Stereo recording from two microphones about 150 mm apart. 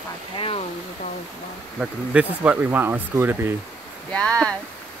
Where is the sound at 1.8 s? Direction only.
10° right (ahead or behind).